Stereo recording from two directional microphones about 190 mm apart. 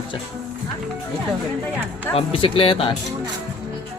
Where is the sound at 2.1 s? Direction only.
30° left (ahead or behind).